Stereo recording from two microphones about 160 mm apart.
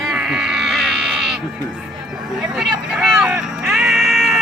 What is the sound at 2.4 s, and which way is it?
Vehicle, 5° right (ahead or behind).